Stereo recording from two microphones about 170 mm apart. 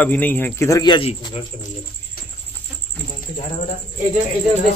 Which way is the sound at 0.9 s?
30° left (ahead or behind).